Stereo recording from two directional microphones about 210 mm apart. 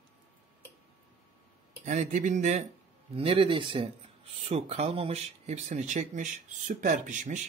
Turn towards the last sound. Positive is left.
turn(degrees=-35)  # may be behind; listen again after turning